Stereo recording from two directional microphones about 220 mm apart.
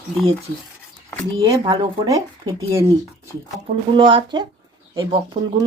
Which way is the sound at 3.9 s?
25° right (ahead or behind).